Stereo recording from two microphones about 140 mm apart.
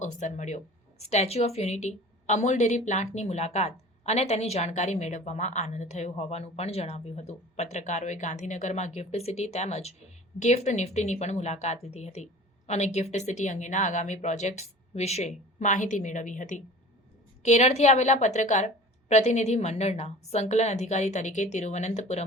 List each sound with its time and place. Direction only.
0.0 s a woman's voice: 60° left (ahead or behind)